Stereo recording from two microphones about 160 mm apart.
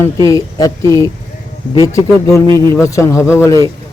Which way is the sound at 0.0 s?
20° left (ahead or behind).